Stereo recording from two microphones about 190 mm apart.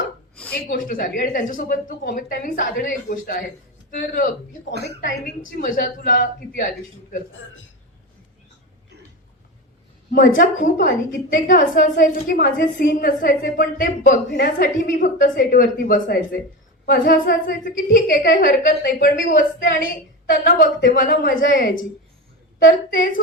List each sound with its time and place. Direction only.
0.5 s a woman's voice: 50° left (ahead or behind)
10.1 s a woman's voice: 45° left (ahead or behind)
19.2 s a woman's voice: 45° left (ahead or behind)
20.6 s a woman's voice: 50° left (ahead or behind)